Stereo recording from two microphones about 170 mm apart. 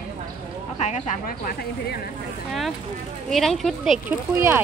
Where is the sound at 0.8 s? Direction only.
45° left (ahead or behind); by 2.0 s 60° left (ahead or behind).